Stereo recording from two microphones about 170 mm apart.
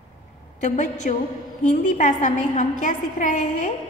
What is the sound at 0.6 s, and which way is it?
A woman's voice, 45° left (ahead or behind).